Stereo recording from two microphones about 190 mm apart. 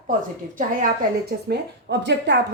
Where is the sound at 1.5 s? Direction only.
65° right (ahead or behind).